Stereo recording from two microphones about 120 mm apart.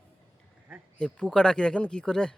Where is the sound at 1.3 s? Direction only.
5° left (ahead or behind).